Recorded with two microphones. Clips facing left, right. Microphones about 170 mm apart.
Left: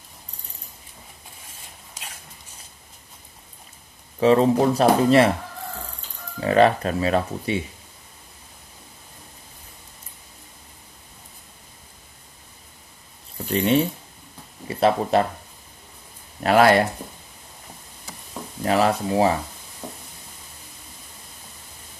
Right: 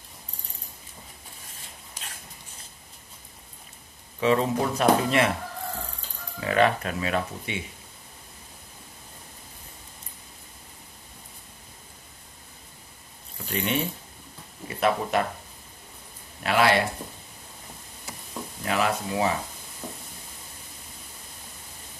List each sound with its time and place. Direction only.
4.2 s speech: 35° left (ahead or behind)
6.4 s speech: 35° left (ahead or behind)
13.5 s speech: 30° left (ahead or behind)
16.4 s speech: 45° left (ahead or behind)
18.6 s speech: 35° left (ahead or behind)